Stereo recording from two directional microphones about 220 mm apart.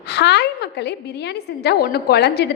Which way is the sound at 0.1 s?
50° left (ahead or behind).